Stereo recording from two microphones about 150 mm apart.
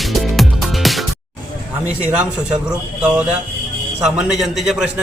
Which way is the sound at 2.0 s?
10° right (ahead or behind).